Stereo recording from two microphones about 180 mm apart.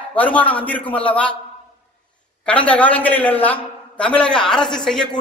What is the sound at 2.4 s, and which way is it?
A man's voice, 5° left (ahead or behind).